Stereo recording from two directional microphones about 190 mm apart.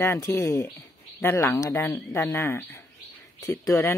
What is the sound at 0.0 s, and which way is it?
Speech, 15° left (ahead or behind).